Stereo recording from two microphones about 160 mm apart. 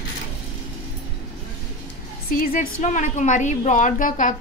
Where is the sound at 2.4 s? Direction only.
60° left (ahead or behind).